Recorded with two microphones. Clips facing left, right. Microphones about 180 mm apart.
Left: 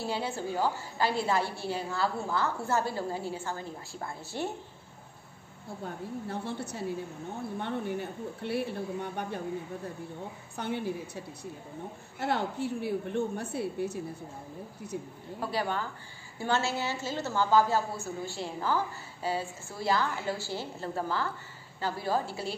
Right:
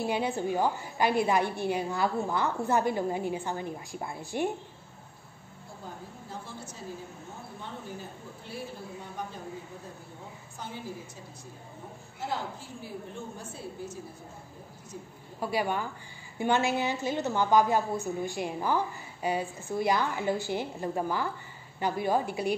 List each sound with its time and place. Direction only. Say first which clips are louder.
0.0 s a woman's voice: right 4 dB; 15° right (ahead or behind)
5.9 s speech: left 7 dB; 65° left (ahead or behind)
10.5 s speech: left 7 dB; 65° left (ahead or behind)
15.4 s a woman's voice: right 2 dB; 15° right (ahead or behind)